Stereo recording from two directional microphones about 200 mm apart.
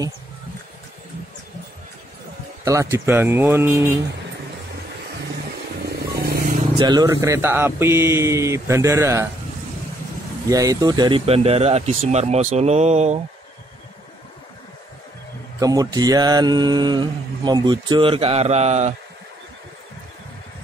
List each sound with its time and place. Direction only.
2.6 s speech: 15° right (ahead or behind)
5.9 s vehicle: 50° right (ahead or behind)
6.8 s speech: 20° right (ahead or behind)
10.5 s speech: 15° right (ahead or behind); by 13.2 s 35° right (ahead or behind)
15.6 s mantra: 20° right (ahead or behind); by 18.9 s 35° right (ahead or behind)